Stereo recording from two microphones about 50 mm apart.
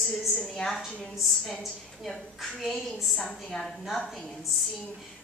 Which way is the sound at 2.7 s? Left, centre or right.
Centre.